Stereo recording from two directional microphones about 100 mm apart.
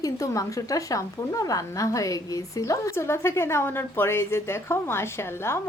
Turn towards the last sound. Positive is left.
turn(degrees=25)  # may be behind; listen again after turning